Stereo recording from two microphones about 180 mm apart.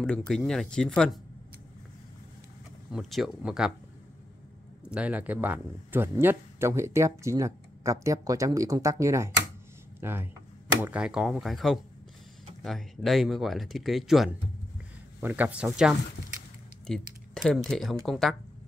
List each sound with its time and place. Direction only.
0.0 s speech: 5° left (ahead or behind)
2.9 s speech: centre (ahead or behind)
4.8 s speech: 5° right (ahead or behind)
16.8 s a sound: 5° left (ahead or behind)
17.6 s speech: centre (ahead or behind)